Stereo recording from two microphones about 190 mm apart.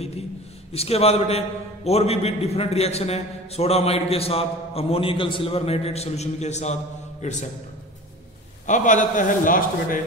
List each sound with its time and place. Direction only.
0.7 s a man's voice: 30° left (ahead or behind)
8.6 s a man's voice: 40° left (ahead or behind)